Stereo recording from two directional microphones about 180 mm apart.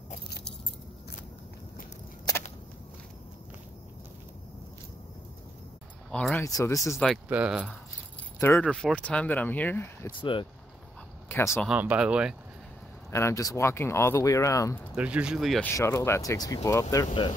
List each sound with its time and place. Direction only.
6.1 s speech: 5° left (ahead or behind)
6.4 s speech: 15° left (ahead or behind)
6.9 s speech: centre (ahead or behind)
8.4 s speech: 10° left (ahead or behind)
11.2 s speech: 15° left (ahead or behind)
11.6 s speech: 5° right (ahead or behind)
13.1 s speech: 15° left (ahead or behind)
15.0 s speech: 5° right (ahead or behind)
15.6 s speech: 15° left (ahead or behind)